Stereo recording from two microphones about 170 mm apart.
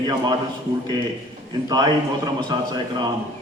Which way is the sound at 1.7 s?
25° right (ahead or behind).